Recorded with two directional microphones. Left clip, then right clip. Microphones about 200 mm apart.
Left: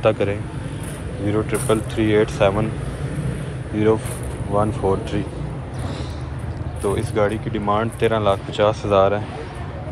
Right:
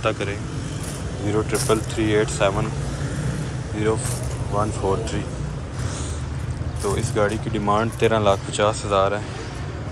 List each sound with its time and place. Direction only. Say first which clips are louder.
0.0 s speech: left 5 dB; centre (ahead or behind)
3.7 s speech: left 5 dB; 5° right (ahead or behind)
6.8 s speech: left 2 dB; 10° right (ahead or behind)